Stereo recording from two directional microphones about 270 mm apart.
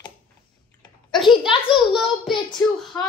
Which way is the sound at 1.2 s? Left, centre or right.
Centre.